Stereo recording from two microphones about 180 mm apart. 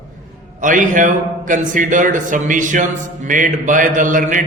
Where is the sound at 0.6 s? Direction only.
45° right (ahead or behind).